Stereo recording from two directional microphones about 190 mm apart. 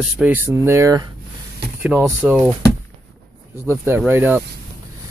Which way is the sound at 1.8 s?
5° right (ahead or behind).